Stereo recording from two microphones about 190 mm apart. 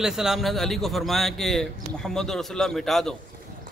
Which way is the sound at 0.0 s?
Centre (ahead or behind).